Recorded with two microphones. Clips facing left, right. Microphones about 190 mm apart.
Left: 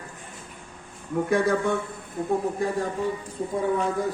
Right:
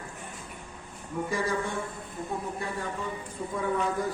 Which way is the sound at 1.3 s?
65° left (ahead or behind).